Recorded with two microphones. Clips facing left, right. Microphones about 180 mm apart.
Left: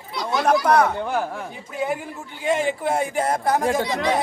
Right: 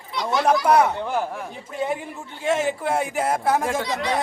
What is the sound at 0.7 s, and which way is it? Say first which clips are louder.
A man's voice: even; 10° right (ahead or behind).